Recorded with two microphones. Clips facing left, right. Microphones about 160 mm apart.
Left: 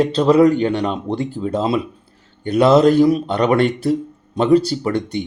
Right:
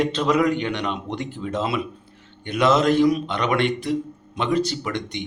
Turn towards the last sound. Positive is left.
turn(degrees=35)  # may be behind; listen again after turning